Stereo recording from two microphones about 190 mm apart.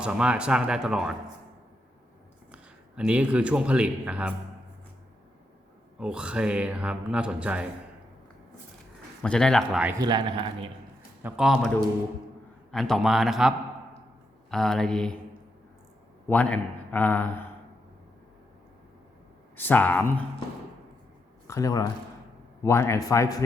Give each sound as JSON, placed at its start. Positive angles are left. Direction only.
{"t": 0.0, "sound": "a man's voice", "side_deg": -5}
{"t": 2.5, "sound": "a man's voice", "side_deg": -5}
{"t": 6.0, "sound": "a man's voice", "side_deg": -5}
{"t": 9.2, "sound": "a man's voice", "side_deg": 5}
{"t": 10.0, "sound": "a man's voice", "side_deg": -25}
{"t": 11.2, "sound": "a man's voice", "side_deg": -5}
{"t": 12.7, "sound": "a man's voice", "side_deg": 0}
{"t": 14.5, "sound": "a man's voice", "side_deg": 0}
{"t": 16.3, "sound": "a man's voice", "side_deg": 5}
{"t": 19.5, "sound": "a man's voice", "side_deg": 10}
{"t": 21.4, "sound": "a man's voice", "side_deg": 15}